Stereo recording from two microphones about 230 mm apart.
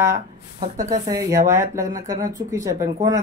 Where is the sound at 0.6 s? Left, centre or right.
Right.